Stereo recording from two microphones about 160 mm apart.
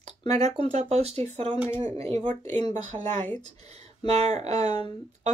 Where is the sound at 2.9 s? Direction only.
30° right (ahead or behind).